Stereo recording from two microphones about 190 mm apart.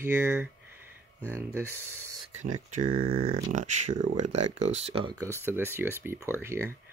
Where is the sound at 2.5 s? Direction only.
45° right (ahead or behind).